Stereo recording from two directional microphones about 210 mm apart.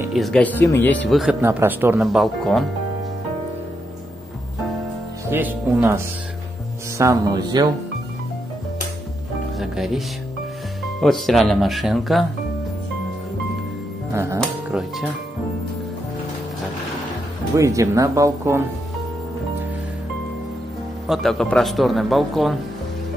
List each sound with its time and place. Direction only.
0.0 s a man's voice: centre (ahead or behind)
1.4 s a man's voice: 10° right (ahead or behind)
5.3 s speech: 10° right (ahead or behind)
9.6 s music: centre (ahead or behind)
11.0 s a man's voice: centre (ahead or behind)
14.1 s speech: 15° right (ahead or behind)
14.4 s music: centre (ahead or behind)
17.6 s speech: 15° right (ahead or behind)
21.1 s a man's voice: centre (ahead or behind)